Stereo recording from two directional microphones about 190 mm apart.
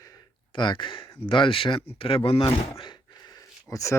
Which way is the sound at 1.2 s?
25° left (ahead or behind).